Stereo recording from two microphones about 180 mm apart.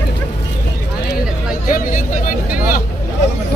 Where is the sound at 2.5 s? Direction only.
55° left (ahead or behind).